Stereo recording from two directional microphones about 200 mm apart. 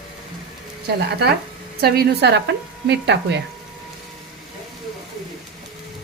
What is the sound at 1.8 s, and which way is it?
Speech, 55° right (ahead or behind).